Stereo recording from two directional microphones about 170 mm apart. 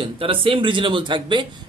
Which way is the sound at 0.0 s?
30° right (ahead or behind).